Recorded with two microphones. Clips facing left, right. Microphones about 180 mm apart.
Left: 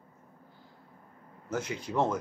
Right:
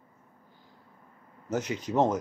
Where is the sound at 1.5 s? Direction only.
20° right (ahead or behind).